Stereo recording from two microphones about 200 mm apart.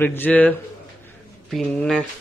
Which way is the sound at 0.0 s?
10° left (ahead or behind).